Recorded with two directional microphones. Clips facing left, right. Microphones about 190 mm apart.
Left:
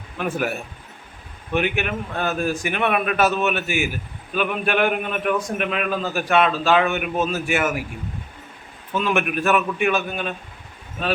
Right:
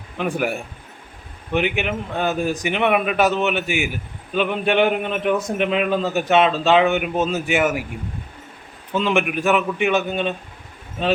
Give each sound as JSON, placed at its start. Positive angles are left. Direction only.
{"t": 0.2, "sound": "a man's voice", "side_deg": -15}
{"t": 8.9, "sound": "a man's voice", "side_deg": -20}